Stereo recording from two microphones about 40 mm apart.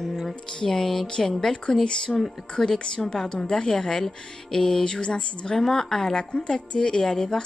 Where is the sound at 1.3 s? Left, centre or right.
Centre.